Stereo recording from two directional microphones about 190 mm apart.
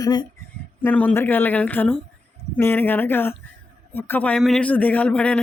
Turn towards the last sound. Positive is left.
turn(degrees=5)  # may be behind; listen again after turning